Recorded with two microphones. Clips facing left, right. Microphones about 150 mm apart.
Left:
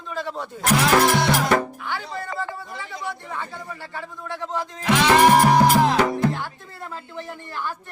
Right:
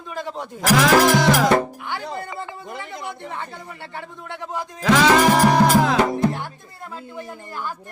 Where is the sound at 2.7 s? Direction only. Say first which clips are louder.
Right 1 dB; 55° right (ahead or behind).